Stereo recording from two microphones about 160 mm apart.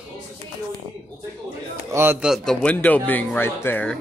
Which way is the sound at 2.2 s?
Centre (ahead or behind).